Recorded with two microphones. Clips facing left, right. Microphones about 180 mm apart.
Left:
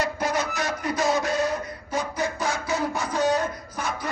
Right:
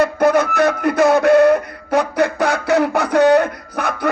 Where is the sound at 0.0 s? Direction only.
60° right (ahead or behind).